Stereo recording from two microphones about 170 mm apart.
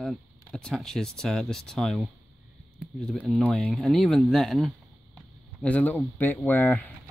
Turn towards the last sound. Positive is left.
turn(degrees=10)  # may be behind; listen again after turning